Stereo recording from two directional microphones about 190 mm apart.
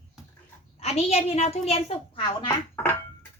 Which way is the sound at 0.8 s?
35° left (ahead or behind).